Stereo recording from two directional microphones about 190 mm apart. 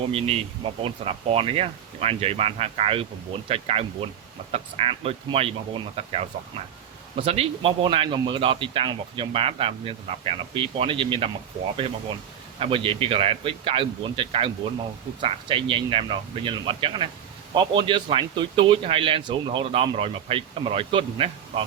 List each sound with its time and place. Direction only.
0.1 s speech: 30° right (ahead or behind)
12.5 s speech: 30° right (ahead or behind)